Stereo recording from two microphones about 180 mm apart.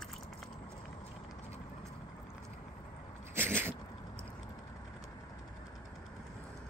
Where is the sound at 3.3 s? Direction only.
10° right (ahead or behind).